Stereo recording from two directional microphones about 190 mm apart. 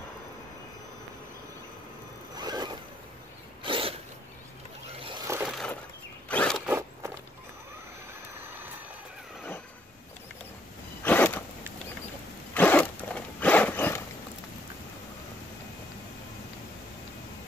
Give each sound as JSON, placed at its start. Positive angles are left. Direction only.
{"t": 2.3, "sound": "zipper", "side_deg": -20}
{"t": 3.6, "sound": "a sound", "side_deg": -25}
{"t": 5.0, "sound": "vehicle", "side_deg": -20}
{"t": 5.4, "sound": "a sound", "side_deg": 0}
{"t": 6.2, "sound": "zipper", "side_deg": 5}
{"t": 11.1, "sound": "zipper", "side_deg": 10}
{"t": 12.5, "sound": "zipper", "side_deg": 10}